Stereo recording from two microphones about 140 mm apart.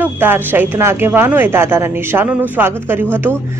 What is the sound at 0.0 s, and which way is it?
Speech, 15° right (ahead or behind).